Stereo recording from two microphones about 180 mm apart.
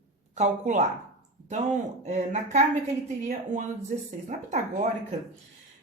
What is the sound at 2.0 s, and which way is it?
Speech, 40° right (ahead or behind).